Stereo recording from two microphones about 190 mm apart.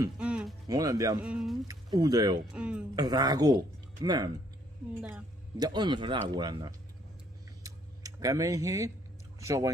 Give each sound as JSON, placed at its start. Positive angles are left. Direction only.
{"t": 0.2, "sound": "music", "side_deg": -5}
{"t": 0.7, "sound": "speech", "side_deg": -20}
{"t": 1.2, "sound": "speech", "side_deg": 0}
{"t": 1.7, "sound": "speech", "side_deg": -20}
{"t": 2.5, "sound": "speech", "side_deg": -5}
{"t": 3.0, "sound": "speech", "side_deg": -20}
{"t": 5.6, "sound": "speech", "side_deg": -20}
{"t": 7.6, "sound": "tick-tock", "side_deg": -20}